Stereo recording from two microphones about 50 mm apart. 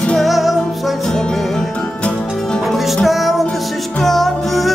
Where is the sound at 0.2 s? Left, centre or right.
Centre.